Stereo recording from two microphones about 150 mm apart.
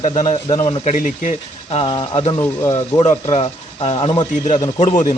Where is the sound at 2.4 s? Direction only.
20° left (ahead or behind).